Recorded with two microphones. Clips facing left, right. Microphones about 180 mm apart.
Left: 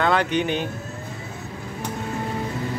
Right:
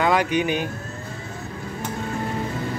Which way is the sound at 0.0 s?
10° right (ahead or behind).